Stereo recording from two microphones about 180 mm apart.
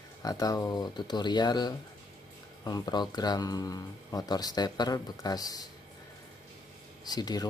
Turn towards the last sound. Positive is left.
turn(degrees=20)  # may be behind; listen again after turning